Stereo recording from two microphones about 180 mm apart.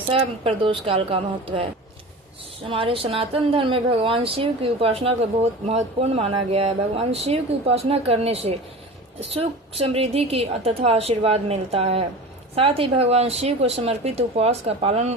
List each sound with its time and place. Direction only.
0.1 s speech: 30° right (ahead or behind)
2.6 s speech: 30° right (ahead or behind)